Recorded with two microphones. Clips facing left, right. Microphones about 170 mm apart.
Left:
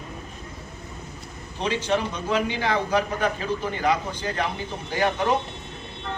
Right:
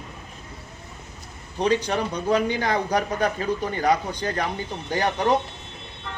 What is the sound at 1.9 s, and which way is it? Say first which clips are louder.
A man's voice: right 1 dB; 40° right (ahead or behind).